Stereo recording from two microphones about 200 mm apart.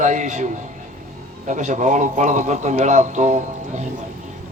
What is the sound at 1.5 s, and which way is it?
A man's voice, 40° right (ahead or behind).